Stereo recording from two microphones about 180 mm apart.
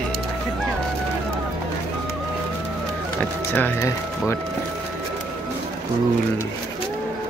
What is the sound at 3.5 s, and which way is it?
Speech, 10° left (ahead or behind).